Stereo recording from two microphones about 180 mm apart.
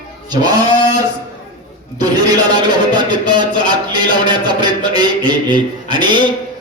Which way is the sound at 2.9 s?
25° right (ahead or behind).